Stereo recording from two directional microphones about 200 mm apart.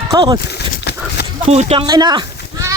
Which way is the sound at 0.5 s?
55° left (ahead or behind).